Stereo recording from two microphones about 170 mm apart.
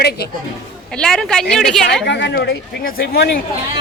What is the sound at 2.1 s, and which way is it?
Speech, 90° left.